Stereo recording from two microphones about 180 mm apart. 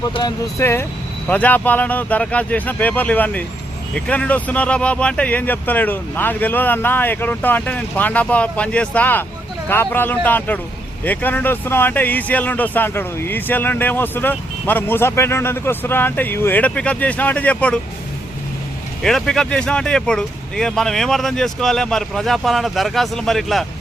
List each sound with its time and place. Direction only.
0.1 s speech: 25° left (ahead or behind); by 17.7 s 5° left (ahead or behind)
19.0 s speech: centre (ahead or behind)